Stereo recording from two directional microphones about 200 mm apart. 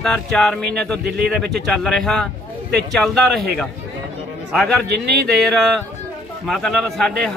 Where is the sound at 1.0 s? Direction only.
50° right (ahead or behind).